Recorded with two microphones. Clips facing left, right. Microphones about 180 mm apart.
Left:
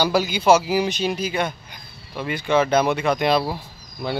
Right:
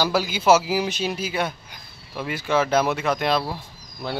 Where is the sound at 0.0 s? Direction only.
Centre (ahead or behind).